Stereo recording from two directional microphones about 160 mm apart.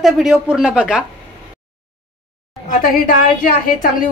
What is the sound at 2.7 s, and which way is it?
A woman's voice, 55° left (ahead or behind).